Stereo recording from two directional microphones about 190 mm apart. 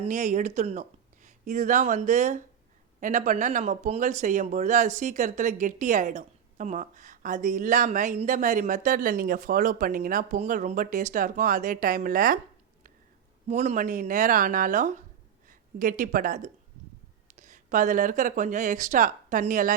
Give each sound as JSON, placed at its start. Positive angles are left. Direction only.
{"t": 0.0, "sound": "speech", "side_deg": -40}
{"t": 13.5, "sound": "speech", "side_deg": -35}